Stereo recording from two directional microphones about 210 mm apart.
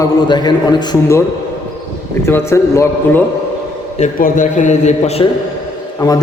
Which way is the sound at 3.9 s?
35° left (ahead or behind).